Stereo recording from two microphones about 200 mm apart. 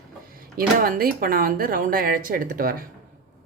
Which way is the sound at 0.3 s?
45° right (ahead or behind).